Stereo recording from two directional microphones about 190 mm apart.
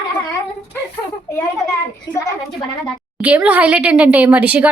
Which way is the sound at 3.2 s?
10° right (ahead or behind).